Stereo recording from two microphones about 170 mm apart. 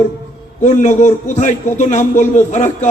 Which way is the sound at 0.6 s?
45° left (ahead or behind).